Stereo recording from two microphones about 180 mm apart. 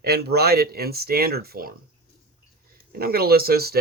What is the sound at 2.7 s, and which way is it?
Speech, 55° right (ahead or behind).